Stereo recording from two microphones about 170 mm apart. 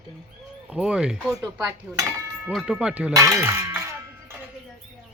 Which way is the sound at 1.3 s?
15° right (ahead or behind).